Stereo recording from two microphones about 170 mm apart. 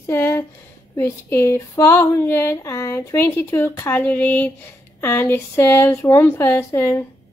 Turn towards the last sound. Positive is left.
turn(degrees=15)  # may be behind; listen again after turning